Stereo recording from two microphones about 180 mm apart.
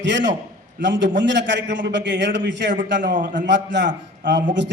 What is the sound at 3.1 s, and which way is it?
Speech, 45° right (ahead or behind).